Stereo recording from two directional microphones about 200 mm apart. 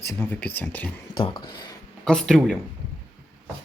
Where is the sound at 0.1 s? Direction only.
10° left (ahead or behind).